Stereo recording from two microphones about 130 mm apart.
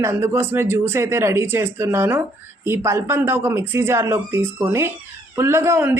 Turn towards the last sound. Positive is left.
turn(degrees=-20)  # may be behind; listen again after turning